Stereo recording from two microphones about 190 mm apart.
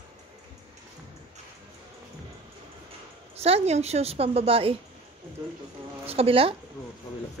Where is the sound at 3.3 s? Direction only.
35° right (ahead or behind).